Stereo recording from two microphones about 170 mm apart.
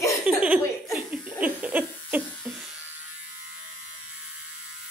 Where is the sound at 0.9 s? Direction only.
5° right (ahead or behind).